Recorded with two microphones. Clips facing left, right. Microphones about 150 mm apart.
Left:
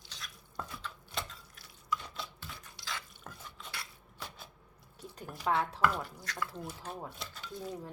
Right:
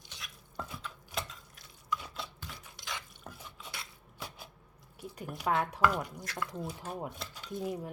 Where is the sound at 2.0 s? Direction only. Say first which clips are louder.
Right 1 dB; 10° right (ahead or behind).